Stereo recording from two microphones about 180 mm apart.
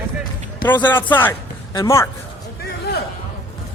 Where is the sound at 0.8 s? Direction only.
10° left (ahead or behind).